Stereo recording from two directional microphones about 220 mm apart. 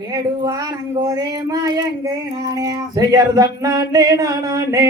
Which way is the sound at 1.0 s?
15° right (ahead or behind).